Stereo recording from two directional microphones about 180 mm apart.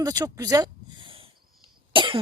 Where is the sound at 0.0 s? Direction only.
20° right (ahead or behind).